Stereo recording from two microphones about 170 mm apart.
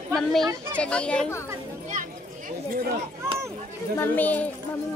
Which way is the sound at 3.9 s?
10° left (ahead or behind).